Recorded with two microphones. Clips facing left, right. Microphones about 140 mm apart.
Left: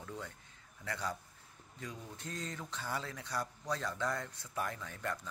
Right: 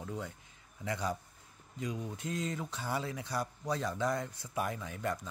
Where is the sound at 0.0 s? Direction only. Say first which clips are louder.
Right 5 dB; 15° right (ahead or behind).